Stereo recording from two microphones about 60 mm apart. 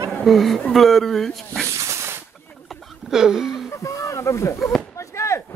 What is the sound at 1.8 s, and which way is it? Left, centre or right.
Snake, right.